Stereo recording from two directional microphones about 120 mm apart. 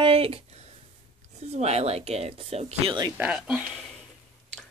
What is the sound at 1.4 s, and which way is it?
Speech, 65° right (ahead or behind).